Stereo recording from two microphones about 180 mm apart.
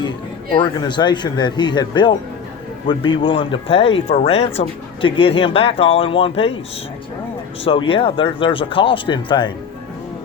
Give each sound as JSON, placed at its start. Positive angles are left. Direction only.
{"t": 0.5, "sound": "speech", "side_deg": 25}
{"t": 7.6, "sound": "speech", "side_deg": 30}